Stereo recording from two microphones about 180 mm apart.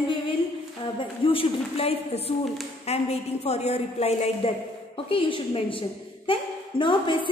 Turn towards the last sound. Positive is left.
turn(degrees=25)  # may be behind; listen again after turning